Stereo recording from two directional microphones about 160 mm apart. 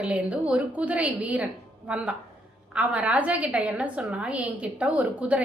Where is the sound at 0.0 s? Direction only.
5° right (ahead or behind).